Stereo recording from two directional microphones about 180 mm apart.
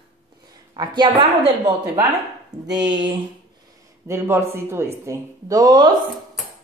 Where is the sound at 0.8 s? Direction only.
25° right (ahead or behind).